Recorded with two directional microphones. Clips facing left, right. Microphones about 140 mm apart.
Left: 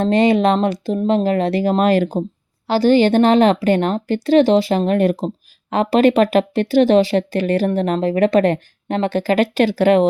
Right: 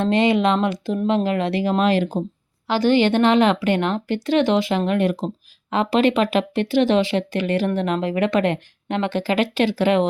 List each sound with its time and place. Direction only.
0.0 s speech: 40° left (ahead or behind)